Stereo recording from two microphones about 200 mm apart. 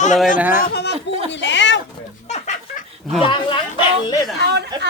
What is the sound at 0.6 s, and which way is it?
Speech, 55° left (ahead or behind).